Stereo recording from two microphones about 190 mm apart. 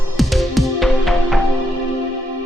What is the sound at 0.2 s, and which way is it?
Music, centre (ahead or behind).